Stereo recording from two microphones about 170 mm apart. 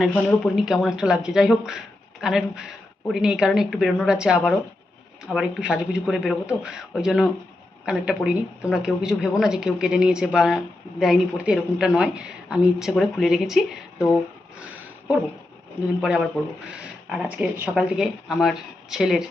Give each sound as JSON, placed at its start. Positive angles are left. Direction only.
{"t": 0.0, "sound": "speech", "side_deg": 10}
{"t": 16.0, "sound": "speech", "side_deg": -5}